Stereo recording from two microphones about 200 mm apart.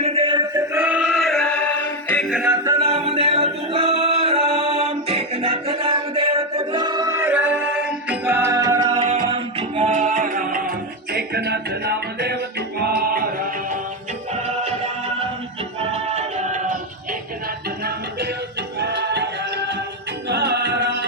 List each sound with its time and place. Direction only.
0.0 s chant: 30° right (ahead or behind); by 2.5 s centre (ahead or behind)
2.5 s a capella: 15° right (ahead or behind)
2.8 s singing: 30° right (ahead or behind)
14.3 s music: 30° right (ahead or behind)
15.8 s music: 30° right (ahead or behind)
18.8 s music: 55° right (ahead or behind)